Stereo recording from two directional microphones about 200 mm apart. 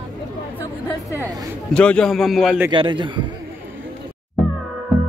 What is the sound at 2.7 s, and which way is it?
Speech, 25° right (ahead or behind).